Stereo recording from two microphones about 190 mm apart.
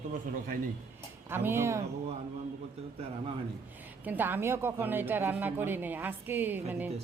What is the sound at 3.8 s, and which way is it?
A woman's voice, 10° right (ahead or behind).